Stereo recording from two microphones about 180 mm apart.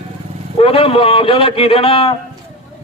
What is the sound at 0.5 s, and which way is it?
A man's voice, 30° left (ahead or behind).